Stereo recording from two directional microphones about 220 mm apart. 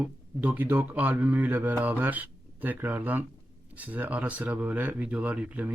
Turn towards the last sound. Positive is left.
turn(degrees=-5)  # may be behind; listen again after turning